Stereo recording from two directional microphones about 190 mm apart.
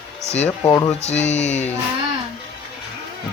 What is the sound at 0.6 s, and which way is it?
Speech, 20° left (ahead or behind).